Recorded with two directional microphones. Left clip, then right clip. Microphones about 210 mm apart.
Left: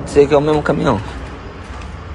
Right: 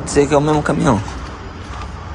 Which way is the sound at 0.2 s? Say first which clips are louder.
Left 2 dB; 15° right (ahead or behind).